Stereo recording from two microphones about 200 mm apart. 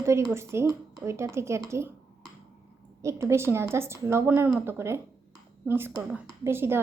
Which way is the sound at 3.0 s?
15° right (ahead or behind).